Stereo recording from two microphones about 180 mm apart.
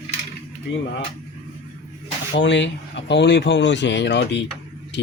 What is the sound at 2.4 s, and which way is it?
Speech, 80° left.